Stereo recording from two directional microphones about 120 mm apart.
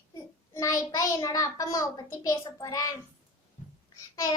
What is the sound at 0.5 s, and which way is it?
A child's voice, 30° left (ahead or behind).